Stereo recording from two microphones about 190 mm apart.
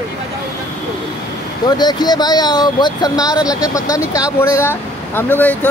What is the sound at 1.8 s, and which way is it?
Speech, 20° left (ahead or behind).